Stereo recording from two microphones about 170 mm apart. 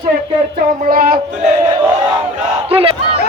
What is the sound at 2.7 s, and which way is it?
Crowd, 35° right (ahead or behind).